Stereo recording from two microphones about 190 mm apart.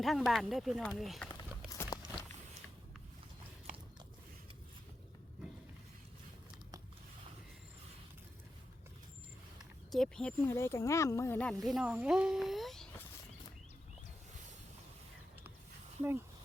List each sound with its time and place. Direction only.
0.0 s speech: centre (ahead or behind)
1.7 s walk: 15° left (ahead or behind)
9.9 s speech: 5° left (ahead or behind)